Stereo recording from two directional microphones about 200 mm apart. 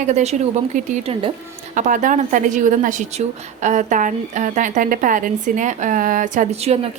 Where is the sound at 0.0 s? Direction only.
35° right (ahead or behind).